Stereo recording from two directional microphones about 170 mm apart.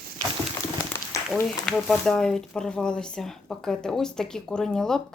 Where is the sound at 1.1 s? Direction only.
20° left (ahead or behind).